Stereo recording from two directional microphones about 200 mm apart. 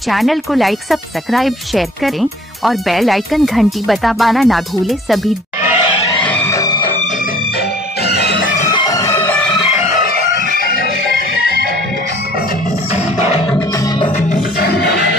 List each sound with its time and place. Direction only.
0.1 s speech: centre (ahead or behind)
6.2 s music: 10° left (ahead or behind)
8.1 s music: 55° left (ahead or behind)
8.7 s music: 15° left (ahead or behind)
12.9 s music: 30° left (ahead or behind)
14.3 s music: 55° left (ahead or behind)